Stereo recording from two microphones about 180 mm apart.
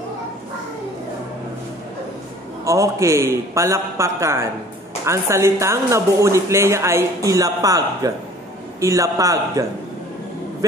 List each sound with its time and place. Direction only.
2.6 s a woman's voice: 15° right (ahead or behind)